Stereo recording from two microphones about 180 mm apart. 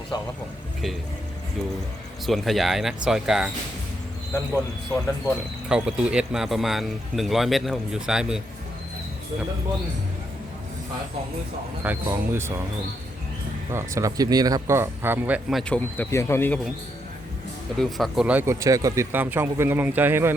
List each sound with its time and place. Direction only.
0.1 s a man's voice: 20° left (ahead or behind)
2.2 s speech: centre (ahead or behind)
5.6 s speech: 5° right (ahead or behind)
11.8 s speech: 10° right (ahead or behind)
13.7 s speech: 15° right (ahead or behind)
16.0 s speech: 15° left (ahead or behind)
17.7 s speech: centre (ahead or behind)